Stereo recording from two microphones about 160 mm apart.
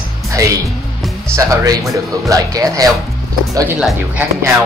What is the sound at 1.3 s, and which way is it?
Speech, 20° right (ahead or behind).